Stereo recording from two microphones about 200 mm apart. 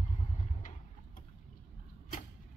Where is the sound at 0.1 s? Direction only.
40° left (ahead or behind).